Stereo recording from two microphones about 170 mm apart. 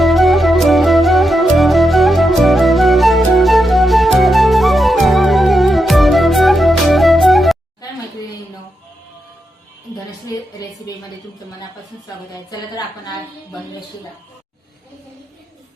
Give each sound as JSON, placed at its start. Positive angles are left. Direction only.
{"t": 0.0, "sound": "music", "side_deg": 0}
{"t": 10.2, "sound": "music", "side_deg": 20}
{"t": 12.5, "sound": "a sound", "side_deg": 25}